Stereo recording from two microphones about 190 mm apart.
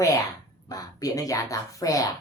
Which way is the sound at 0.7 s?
20° left (ahead or behind).